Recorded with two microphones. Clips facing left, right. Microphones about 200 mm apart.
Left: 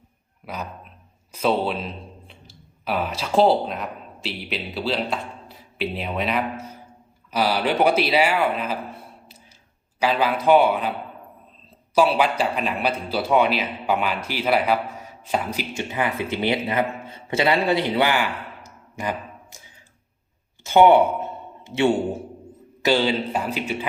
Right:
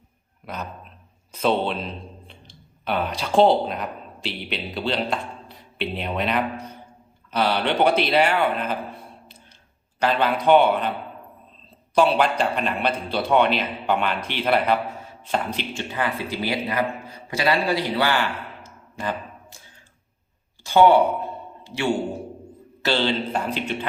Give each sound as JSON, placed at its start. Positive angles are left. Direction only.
{"t": 0.4, "sound": "a man's voice", "side_deg": 5}
{"t": 11.9, "sound": "a man's voice", "side_deg": 5}
{"t": 15.7, "sound": "speech", "side_deg": 20}
{"t": 20.7, "sound": "a sound", "side_deg": 20}
{"t": 22.8, "sound": "a man's voice", "side_deg": 10}